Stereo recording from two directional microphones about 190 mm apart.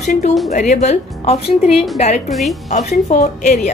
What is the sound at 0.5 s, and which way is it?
A woman's voice, 40° left (ahead or behind).